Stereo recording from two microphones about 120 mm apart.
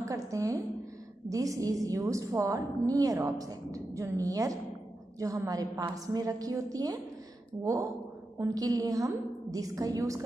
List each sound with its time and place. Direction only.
0.0 s a woman's voice: 25° right (ahead or behind)